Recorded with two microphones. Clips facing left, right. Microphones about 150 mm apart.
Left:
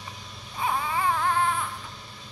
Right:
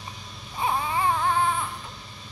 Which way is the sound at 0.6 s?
20° right (ahead or behind).